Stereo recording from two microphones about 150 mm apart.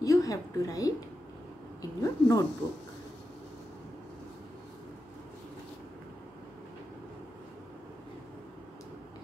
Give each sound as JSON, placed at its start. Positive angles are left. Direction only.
{"t": 0.0, "sound": "a woman's voice", "side_deg": 20}